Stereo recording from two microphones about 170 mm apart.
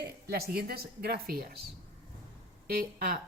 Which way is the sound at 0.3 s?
65° right (ahead or behind).